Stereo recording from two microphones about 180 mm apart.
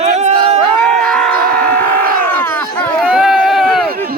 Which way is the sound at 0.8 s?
5° left (ahead or behind).